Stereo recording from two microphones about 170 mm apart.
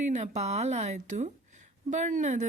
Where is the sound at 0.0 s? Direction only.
45° right (ahead or behind).